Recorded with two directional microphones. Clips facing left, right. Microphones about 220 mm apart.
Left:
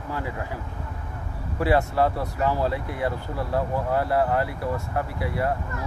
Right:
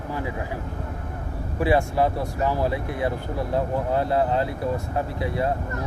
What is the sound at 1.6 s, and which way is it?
Speech, 15° right (ahead or behind).